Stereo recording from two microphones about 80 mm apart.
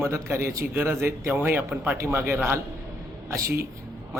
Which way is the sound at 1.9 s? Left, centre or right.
Right.